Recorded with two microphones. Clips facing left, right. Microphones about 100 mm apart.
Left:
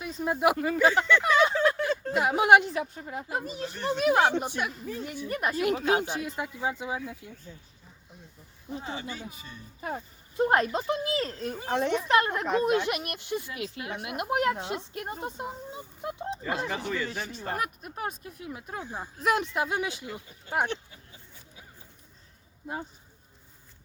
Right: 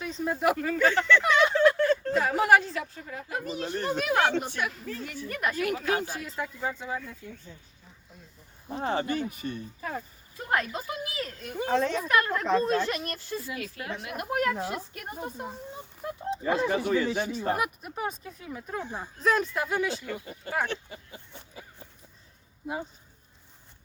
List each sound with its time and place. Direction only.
0.0 s a woman's voice: 5° left (ahead or behind); by 3.4 s 25° left (ahead or behind)
3.5 s speech: 40° right (ahead or behind)
4.1 s speech: 15° left (ahead or behind)
8.8 s speech: 60° right (ahead or behind)
9.8 s a woman's voice: 30° left (ahead or behind)
11.7 s a woman's voice: 20° left (ahead or behind)
17.1 s speech: 5° right (ahead or behind)
18.2 s speech: 10° left (ahead or behind)
20.1 s speech: 75° right (ahead or behind)